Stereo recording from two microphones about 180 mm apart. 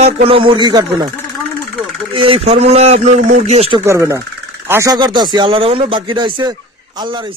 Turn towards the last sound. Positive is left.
turn(degrees=-25)  # may be behind; listen again after turning